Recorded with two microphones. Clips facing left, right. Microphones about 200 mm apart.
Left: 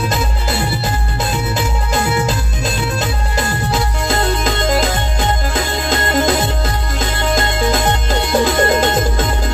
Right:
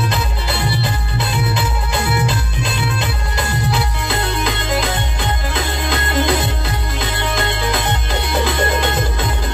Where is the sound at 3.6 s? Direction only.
45° left (ahead or behind).